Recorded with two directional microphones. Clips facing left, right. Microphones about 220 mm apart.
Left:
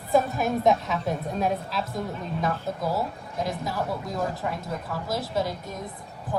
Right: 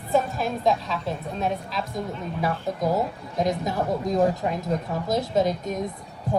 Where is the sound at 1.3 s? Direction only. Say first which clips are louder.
Right 1 dB; 5° left (ahead or behind).